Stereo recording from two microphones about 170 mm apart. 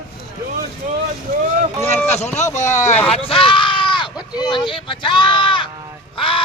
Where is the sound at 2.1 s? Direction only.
40° left (ahead or behind).